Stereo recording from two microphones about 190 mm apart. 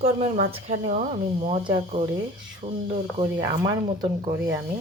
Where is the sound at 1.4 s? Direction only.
25° right (ahead or behind).